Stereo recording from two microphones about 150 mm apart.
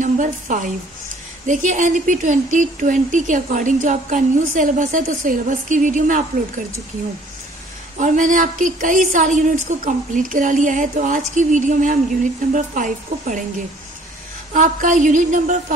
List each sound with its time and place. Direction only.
0.0 s a woman's voice: 60° right (ahead or behind)
8.0 s speech: 55° right (ahead or behind)
14.5 s speech: 60° right (ahead or behind)